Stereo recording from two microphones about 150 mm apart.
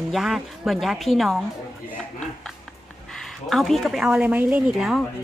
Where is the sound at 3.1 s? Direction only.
Centre (ahead or behind).